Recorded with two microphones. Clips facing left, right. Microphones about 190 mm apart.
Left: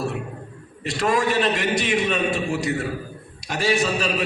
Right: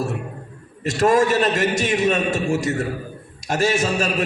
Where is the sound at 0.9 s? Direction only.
45° right (ahead or behind).